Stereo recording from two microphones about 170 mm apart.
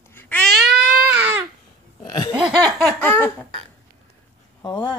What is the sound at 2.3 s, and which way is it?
Laughter, 5° right (ahead or behind).